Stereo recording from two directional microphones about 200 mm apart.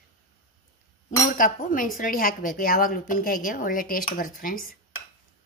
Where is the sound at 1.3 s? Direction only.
40° left (ahead or behind).